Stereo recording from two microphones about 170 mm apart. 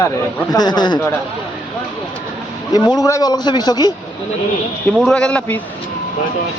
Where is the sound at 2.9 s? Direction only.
20° left (ahead or behind).